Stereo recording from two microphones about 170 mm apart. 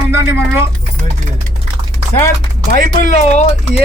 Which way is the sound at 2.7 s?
45° left (ahead or behind).